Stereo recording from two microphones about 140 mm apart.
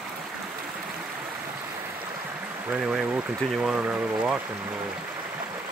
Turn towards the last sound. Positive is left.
turn(degrees=-10)  # may be behind; listen again after turning